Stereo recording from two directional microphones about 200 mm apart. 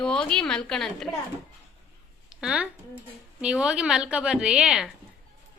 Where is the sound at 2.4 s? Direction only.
5° right (ahead or behind).